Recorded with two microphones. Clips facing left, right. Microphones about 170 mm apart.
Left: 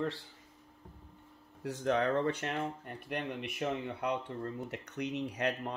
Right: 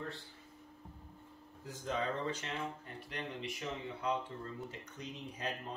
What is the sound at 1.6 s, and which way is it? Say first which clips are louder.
Speech: left 7 dB; 70° left (ahead or behind).